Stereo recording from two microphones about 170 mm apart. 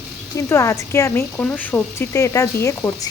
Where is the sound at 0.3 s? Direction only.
15° left (ahead or behind).